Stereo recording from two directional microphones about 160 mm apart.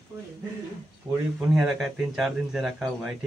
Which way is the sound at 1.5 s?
Centre (ahead or behind).